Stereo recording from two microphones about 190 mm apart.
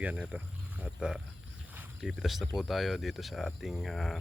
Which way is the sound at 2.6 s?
Centre (ahead or behind).